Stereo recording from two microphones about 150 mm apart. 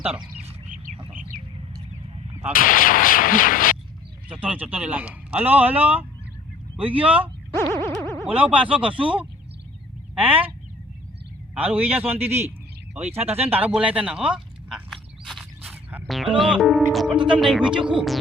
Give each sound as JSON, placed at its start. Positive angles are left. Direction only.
{"t": 2.5, "sound": "artillery fire", "side_deg": 70}
{"t": 4.3, "sound": "speech", "side_deg": -10}
{"t": 11.5, "sound": "speech", "side_deg": -10}
{"t": 13.0, "sound": "speech", "side_deg": -45}
{"t": 13.5, "sound": "a sound", "side_deg": -10}
{"t": 15.7, "sound": "music", "side_deg": -10}
{"t": 16.0, "sound": "music", "side_deg": 0}
{"t": 16.4, "sound": "speech", "side_deg": 0}